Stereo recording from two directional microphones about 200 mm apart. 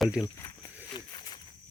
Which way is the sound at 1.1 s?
20° left (ahead or behind).